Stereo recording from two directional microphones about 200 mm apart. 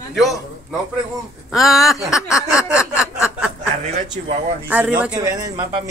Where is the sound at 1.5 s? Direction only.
Centre (ahead or behind).